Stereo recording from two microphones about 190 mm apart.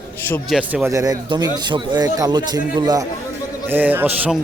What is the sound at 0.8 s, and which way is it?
A man's voice, 15° right (ahead or behind).